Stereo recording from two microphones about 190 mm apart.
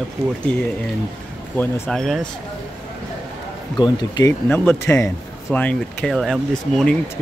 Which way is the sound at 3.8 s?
20° left (ahead or behind).